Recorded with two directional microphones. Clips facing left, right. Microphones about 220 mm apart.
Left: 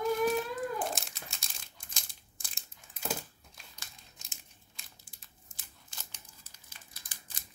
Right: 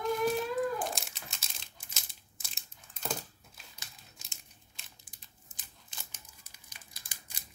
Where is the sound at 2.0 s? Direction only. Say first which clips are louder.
Even; 5° right (ahead or behind).